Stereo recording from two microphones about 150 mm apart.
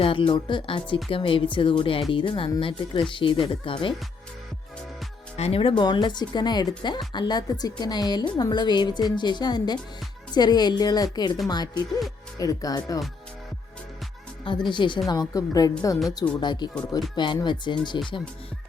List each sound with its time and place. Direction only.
0.0 s speech: 35° left (ahead or behind)
5.4 s speech: 40° left (ahead or behind); by 13.0 s 25° left (ahead or behind)
14.4 s speech: 30° left (ahead or behind)